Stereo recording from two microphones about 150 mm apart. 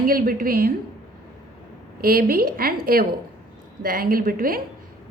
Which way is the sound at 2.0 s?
80° right.